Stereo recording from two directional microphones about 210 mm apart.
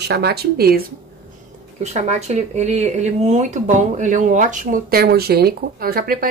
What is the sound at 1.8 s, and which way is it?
Speech, 30° right (ahead or behind).